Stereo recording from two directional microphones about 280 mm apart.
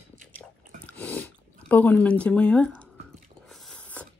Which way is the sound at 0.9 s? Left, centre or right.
Centre.